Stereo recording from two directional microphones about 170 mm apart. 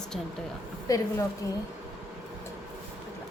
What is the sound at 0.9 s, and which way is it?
Speech, 20° left (ahead or behind).